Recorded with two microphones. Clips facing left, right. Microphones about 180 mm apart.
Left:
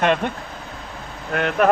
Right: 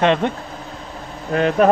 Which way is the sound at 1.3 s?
30° right (ahead or behind).